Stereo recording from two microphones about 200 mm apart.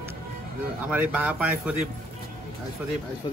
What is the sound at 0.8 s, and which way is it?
Speech, 5° right (ahead or behind).